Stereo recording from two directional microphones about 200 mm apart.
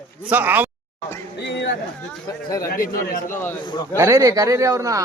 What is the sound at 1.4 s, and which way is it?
Chatter, 60° left (ahead or behind).